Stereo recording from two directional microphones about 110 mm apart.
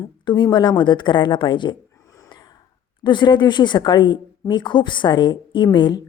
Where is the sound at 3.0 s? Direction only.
45° left (ahead or behind).